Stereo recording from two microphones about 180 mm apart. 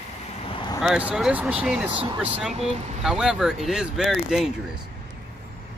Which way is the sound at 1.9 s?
30° right (ahead or behind).